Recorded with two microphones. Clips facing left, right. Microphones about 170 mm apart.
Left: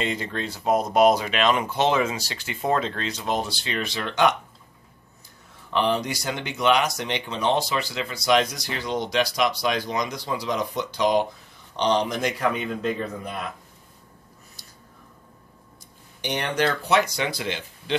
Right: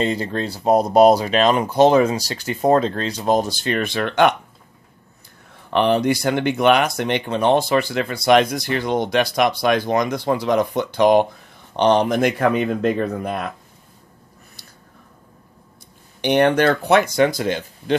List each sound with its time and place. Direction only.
0.0 s speech: 35° right (ahead or behind); by 4.4 s 60° right (ahead or behind)
5.7 s speech: 60° right (ahead or behind)
14.6 s a sound: 60° right (ahead or behind)
16.2 s speech: 60° right (ahead or behind)